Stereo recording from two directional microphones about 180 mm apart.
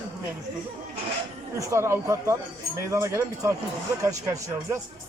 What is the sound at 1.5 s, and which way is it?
A man's voice, 15° right (ahead or behind).